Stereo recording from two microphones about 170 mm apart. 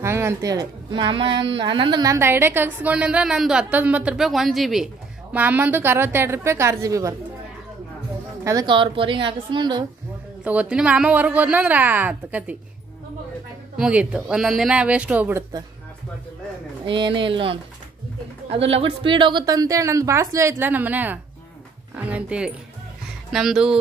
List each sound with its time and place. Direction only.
0.0 s a woman's voice: 15° right (ahead or behind)
8.5 s a woman's voice: 25° right (ahead or behind)
10.4 s a woman's voice: 10° right (ahead or behind)
13.7 s speech: 5° right (ahead or behind)
16.8 s a woman's voice: 30° right (ahead or behind); by 23.8 s 5° right (ahead or behind)